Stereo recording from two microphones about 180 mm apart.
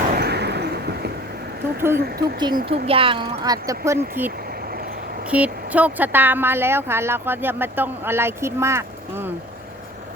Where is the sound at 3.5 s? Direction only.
20° right (ahead or behind).